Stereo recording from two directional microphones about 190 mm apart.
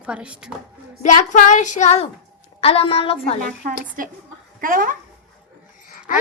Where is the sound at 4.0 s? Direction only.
45° right (ahead or behind).